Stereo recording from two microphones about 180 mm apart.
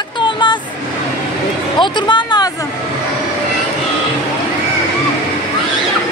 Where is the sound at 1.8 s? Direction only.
25° left (ahead or behind).